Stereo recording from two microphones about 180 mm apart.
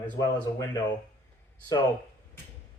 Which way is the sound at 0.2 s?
20° left (ahead or behind).